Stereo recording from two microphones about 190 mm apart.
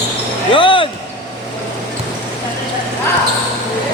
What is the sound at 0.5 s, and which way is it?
Basketball bounce, 25° left (ahead or behind).